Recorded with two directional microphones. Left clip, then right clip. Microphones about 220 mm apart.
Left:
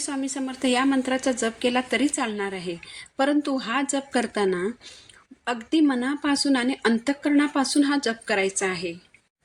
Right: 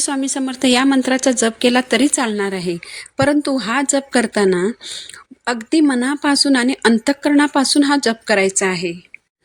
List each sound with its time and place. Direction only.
0.0 s a woman's voice: 40° right (ahead or behind)